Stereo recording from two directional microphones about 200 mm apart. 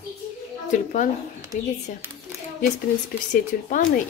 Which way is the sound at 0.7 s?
40° left (ahead or behind).